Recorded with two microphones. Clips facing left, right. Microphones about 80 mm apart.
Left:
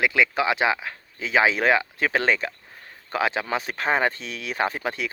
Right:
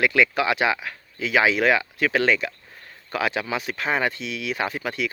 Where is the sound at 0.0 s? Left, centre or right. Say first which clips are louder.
Right 1 dB; left.